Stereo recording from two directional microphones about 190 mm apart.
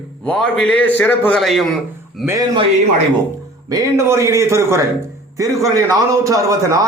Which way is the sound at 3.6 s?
15° right (ahead or behind).